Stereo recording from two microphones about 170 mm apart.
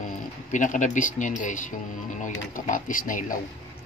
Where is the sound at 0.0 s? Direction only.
50° left (ahead or behind).